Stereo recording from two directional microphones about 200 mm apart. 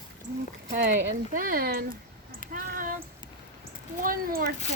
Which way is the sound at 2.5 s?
40° right (ahead or behind).